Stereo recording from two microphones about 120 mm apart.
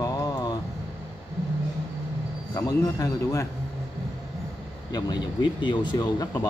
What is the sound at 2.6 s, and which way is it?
Speech, 25° left (ahead or behind).